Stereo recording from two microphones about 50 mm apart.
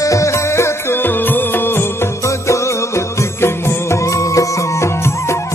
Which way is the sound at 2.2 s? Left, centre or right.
Left.